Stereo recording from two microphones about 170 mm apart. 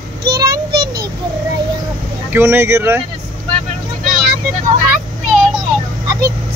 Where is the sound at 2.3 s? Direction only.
15° right (ahead or behind).